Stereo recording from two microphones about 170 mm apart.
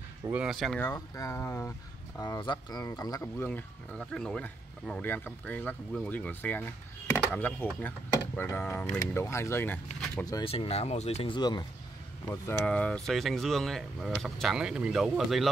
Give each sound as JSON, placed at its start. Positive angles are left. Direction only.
{"t": 0.3, "sound": "speech", "side_deg": -5}
{"t": 0.8, "sound": "speech", "side_deg": 15}
{"t": 10.4, "sound": "speech", "side_deg": 35}
{"t": 11.3, "sound": "speech", "side_deg": 25}
{"t": 12.3, "sound": "speech", "side_deg": 10}